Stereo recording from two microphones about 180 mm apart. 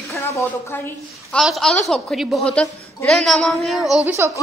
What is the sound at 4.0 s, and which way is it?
Speech, 15° right (ahead or behind).